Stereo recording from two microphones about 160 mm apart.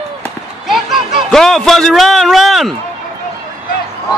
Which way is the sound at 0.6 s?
Centre (ahead or behind).